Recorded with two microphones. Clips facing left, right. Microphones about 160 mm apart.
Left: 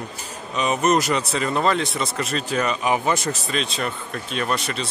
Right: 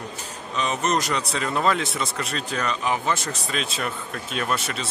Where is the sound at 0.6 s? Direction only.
10° left (ahead or behind).